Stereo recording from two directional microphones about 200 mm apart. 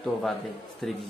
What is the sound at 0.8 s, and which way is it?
Speech, centre (ahead or behind).